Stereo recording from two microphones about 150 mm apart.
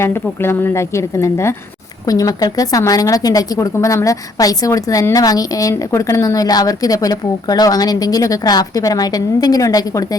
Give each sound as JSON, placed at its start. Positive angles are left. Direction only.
{"t": 0.0, "sound": "a woman's voice", "side_deg": 15}